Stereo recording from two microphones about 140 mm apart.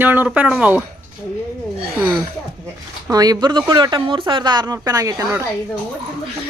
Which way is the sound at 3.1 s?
25° right (ahead or behind).